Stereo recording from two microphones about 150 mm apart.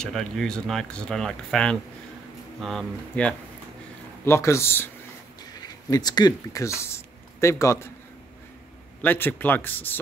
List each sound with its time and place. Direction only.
0.0 s speech: 5° left (ahead or behind)
4.2 s speech: 20° left (ahead or behind)
9.0 s speech: 15° left (ahead or behind)